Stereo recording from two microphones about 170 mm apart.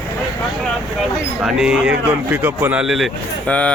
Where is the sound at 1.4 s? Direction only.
5° right (ahead or behind).